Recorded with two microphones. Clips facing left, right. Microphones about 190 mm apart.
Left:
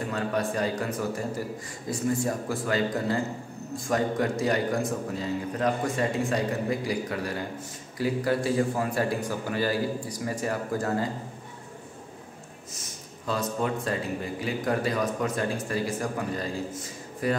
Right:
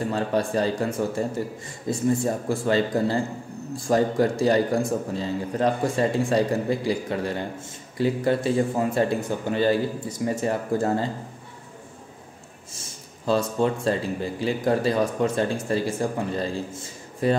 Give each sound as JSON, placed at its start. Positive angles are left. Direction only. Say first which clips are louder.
{"t": 0.1, "sound": "a man's voice", "louder": "right 3 dB", "side_deg": -30}
{"t": 12.7, "sound": "speech", "louder": "even", "side_deg": -30}